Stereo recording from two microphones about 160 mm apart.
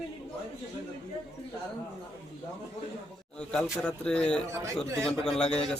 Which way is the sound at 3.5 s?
5° left (ahead or behind).